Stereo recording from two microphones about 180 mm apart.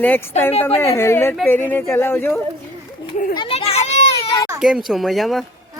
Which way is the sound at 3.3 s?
30° left (ahead or behind).